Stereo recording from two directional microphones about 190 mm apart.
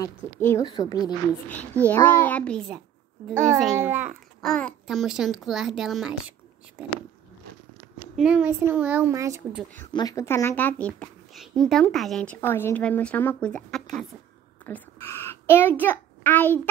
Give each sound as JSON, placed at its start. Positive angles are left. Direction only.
{"t": 0.0, "sound": "a woman's voice", "side_deg": 15}
{"t": 1.9, "sound": "speech", "side_deg": 10}
{"t": 3.7, "sound": "speech", "side_deg": -10}
{"t": 4.4, "sound": "a child's voice", "side_deg": 5}
{"t": 8.2, "sound": "speech", "side_deg": -5}
{"t": 9.9, "sound": "a child's voice", "side_deg": 15}